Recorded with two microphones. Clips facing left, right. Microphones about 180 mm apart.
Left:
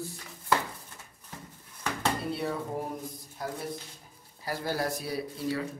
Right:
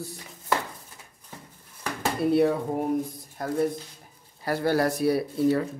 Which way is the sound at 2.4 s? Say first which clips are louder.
Right 10 dB; 60° right (ahead or behind).